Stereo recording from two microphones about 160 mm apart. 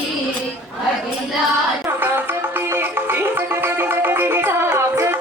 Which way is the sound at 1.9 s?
15° right (ahead or behind).